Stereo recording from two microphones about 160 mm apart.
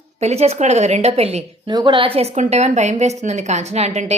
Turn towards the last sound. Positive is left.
turn(degrees=-45)  # may be behind; listen again after turning